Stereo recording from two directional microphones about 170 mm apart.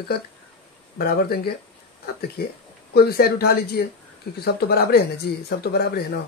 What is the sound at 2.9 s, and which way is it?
Speech, 65° left (ahead or behind).